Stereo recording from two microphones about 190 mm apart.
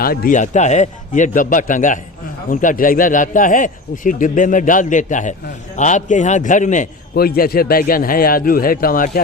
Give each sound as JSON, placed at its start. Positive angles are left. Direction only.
{"t": 0.0, "sound": "a man's voice", "side_deg": 50}